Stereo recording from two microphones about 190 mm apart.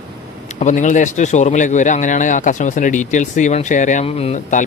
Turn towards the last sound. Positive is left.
turn(degrees=35)  # may be behind; listen again after turning